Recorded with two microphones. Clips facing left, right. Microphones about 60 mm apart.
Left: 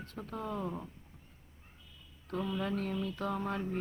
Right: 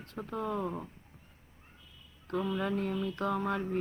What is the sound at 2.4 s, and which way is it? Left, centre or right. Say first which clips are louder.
Speech: right 3 dB; right.